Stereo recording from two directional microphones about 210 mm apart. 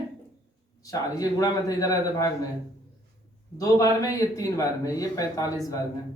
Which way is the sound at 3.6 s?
15° left (ahead or behind).